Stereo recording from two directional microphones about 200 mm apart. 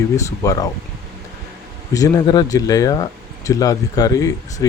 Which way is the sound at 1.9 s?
20° left (ahead or behind).